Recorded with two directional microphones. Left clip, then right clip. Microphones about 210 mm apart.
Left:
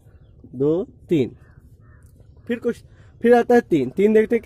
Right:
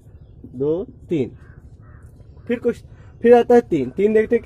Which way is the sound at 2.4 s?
40° left (ahead or behind).